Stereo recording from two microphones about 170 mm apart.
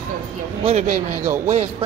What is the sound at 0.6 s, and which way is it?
Speech, 40° right (ahead or behind).